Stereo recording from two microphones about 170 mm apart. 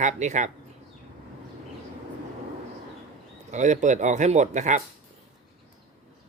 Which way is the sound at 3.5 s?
45° right (ahead or behind).